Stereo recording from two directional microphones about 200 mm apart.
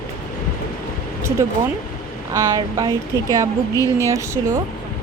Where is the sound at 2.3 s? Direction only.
15° right (ahead or behind).